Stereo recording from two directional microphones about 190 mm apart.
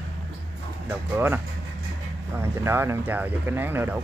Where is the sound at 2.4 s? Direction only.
15° right (ahead or behind).